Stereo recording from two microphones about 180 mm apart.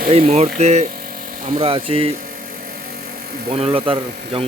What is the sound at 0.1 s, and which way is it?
Speech, 35° right (ahead or behind).